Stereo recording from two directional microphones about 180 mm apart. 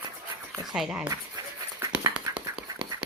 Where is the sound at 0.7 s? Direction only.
Centre (ahead or behind).